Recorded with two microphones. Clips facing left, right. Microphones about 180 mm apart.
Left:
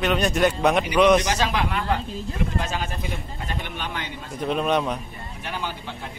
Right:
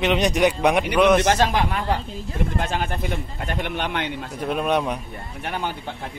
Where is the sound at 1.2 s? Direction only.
45° right (ahead or behind).